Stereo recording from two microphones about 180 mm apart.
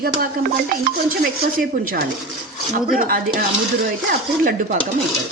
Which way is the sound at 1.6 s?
50° right (ahead or behind).